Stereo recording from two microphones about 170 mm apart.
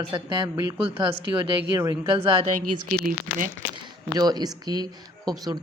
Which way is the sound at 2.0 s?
30° right (ahead or behind).